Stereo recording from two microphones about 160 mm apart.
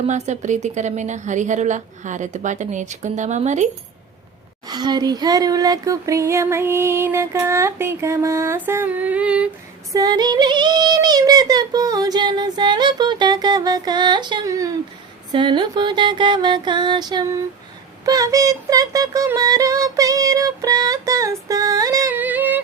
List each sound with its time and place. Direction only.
0.0 s a woman's voice: 45° right (ahead or behind)
4.7 s a sound: 25° right (ahead or behind); by 9.5 s 5° right (ahead or behind)
9.9 s female singing: 20° right (ahead or behind)
15.3 s music: 30° right (ahead or behind); by 22.6 s 10° right (ahead or behind)